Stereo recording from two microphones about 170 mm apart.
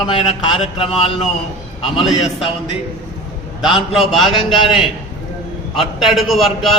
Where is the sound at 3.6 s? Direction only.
Centre (ahead or behind).